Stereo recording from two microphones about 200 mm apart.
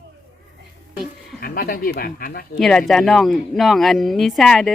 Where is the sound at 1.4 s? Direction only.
45° left (ahead or behind).